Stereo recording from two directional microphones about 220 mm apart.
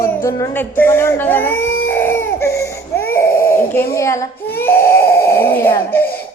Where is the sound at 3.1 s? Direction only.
10° left (ahead or behind).